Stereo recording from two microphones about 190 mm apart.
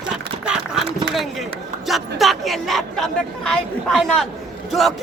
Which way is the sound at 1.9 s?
Centre (ahead or behind).